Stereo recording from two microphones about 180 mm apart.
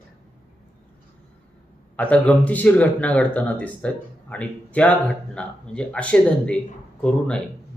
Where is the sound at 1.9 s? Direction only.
5° left (ahead or behind).